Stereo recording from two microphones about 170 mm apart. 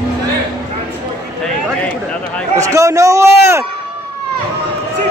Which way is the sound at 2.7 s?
20° right (ahead or behind).